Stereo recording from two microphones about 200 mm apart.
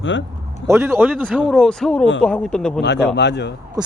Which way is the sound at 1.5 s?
5° left (ahead or behind).